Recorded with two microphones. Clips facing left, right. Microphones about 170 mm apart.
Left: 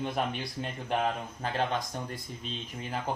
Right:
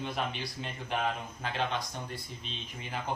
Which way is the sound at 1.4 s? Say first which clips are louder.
Left 4 dB; 45° left (ahead or behind).